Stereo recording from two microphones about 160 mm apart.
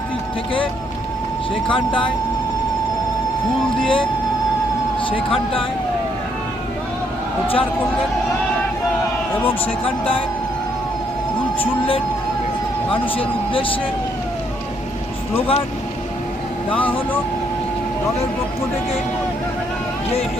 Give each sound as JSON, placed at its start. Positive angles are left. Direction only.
{"t": 1.6, "sound": "speech", "side_deg": 30}
{"t": 3.8, "sound": "speech", "side_deg": 35}
{"t": 7.4, "sound": "speech", "side_deg": 35}
{"t": 9.8, "sound": "speech", "side_deg": 35}
{"t": 12.9, "sound": "speech", "side_deg": 35}
{"t": 15.4, "sound": "speech", "side_deg": 35}